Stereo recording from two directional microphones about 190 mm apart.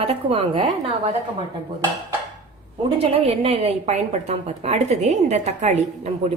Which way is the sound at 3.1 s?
30° right (ahead or behind).